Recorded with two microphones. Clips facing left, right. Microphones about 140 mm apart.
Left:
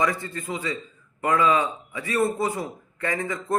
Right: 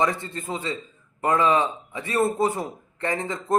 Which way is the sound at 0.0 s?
25° right (ahead or behind).